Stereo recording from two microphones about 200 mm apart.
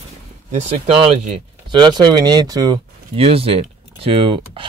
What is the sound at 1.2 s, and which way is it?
Speech, 25° right (ahead or behind).